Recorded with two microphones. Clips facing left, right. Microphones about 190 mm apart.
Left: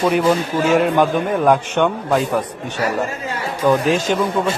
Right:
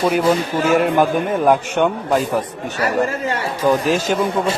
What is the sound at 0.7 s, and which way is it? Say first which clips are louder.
A man's voice: even; 5° right (ahead or behind).